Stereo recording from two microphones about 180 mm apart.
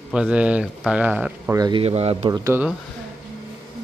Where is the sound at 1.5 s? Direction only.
20° right (ahead or behind).